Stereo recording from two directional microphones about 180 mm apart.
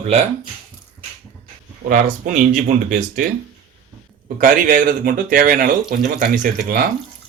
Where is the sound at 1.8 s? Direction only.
50° right (ahead or behind).